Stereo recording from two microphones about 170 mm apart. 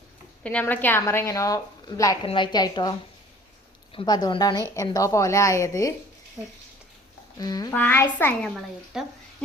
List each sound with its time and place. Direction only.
0.4 s a woman's voice: 10° left (ahead or behind)
3.9 s a woman's voice: 25° left (ahead or behind)
6.4 s speech: centre (ahead or behind)
7.3 s a woman's voice: 20° left (ahead or behind)
7.7 s a woman's voice: 10° left (ahead or behind)